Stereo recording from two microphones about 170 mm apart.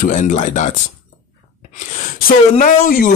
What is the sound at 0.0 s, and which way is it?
Speech, 45° left (ahead or behind).